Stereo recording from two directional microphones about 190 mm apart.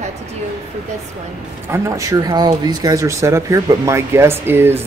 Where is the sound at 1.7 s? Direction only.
15° right (ahead or behind).